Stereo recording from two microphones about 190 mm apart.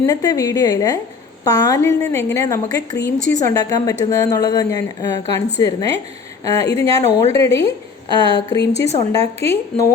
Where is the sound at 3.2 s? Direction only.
40° right (ahead or behind).